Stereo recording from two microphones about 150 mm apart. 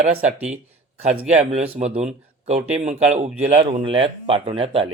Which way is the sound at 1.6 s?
40° right (ahead or behind).